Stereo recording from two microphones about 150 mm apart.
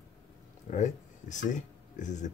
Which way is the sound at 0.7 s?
55° left (ahead or behind).